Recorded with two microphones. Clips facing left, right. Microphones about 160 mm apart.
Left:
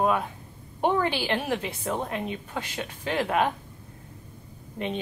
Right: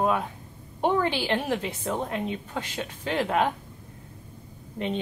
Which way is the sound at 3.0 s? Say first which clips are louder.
Even; 10° left (ahead or behind).